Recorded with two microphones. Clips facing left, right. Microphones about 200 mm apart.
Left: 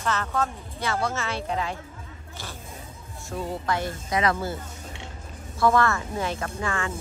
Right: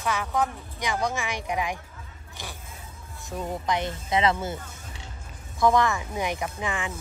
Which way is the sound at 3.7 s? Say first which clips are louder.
Right 2 dB; 20° right (ahead or behind).